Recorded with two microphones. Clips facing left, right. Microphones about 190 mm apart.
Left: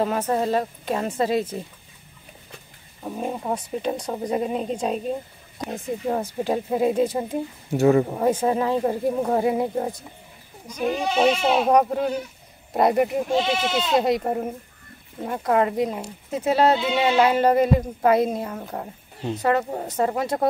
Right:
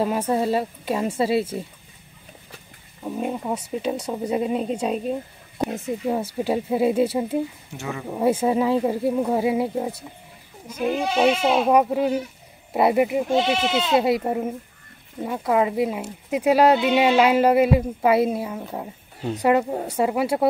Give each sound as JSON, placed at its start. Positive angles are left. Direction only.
{"t": 0.0, "sound": "speech", "side_deg": -10}
{"t": 3.2, "sound": "speech", "side_deg": 0}
{"t": 6.0, "sound": "speech", "side_deg": -10}
{"t": 7.7, "sound": "speech", "side_deg": 40}
{"t": 8.2, "sound": "speech", "side_deg": -10}